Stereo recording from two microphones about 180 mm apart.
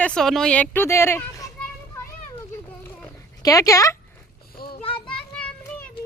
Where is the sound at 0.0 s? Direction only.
5° left (ahead or behind).